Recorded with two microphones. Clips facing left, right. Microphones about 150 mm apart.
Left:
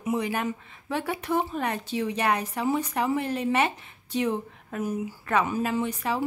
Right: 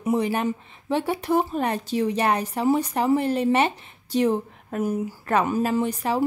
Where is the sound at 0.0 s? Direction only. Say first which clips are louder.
Right 4 dB; 35° right (ahead or behind).